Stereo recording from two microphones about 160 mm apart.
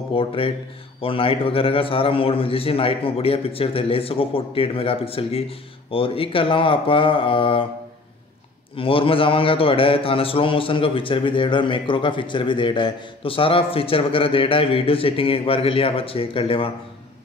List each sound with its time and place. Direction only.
0.1 s a man's voice: 35° left (ahead or behind)
8.7 s a man's voice: 35° left (ahead or behind)